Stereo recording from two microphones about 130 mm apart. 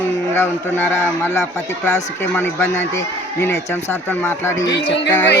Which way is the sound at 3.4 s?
15° left (ahead or behind).